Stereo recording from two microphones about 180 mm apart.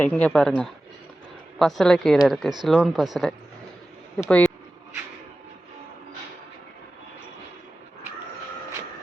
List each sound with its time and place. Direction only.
0.0 s speech: 10° left (ahead or behind)
4.2 s speech: 10° left (ahead or behind)